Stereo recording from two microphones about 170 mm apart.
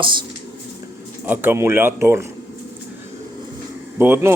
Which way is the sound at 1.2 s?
10° right (ahead or behind).